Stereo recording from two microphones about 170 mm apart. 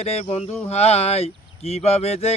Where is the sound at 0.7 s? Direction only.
40° left (ahead or behind).